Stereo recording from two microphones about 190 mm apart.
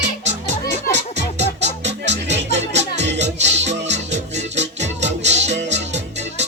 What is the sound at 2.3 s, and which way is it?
Music, 65° right (ahead or behind).